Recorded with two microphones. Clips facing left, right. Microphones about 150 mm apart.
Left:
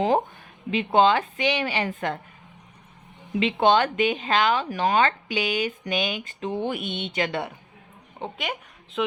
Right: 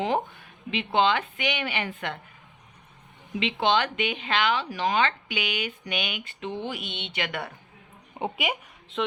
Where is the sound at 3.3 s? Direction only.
45° left (ahead or behind).